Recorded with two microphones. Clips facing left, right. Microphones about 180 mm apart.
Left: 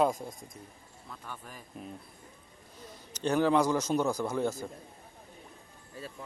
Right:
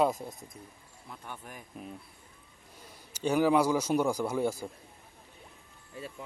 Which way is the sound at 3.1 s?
10° right (ahead or behind).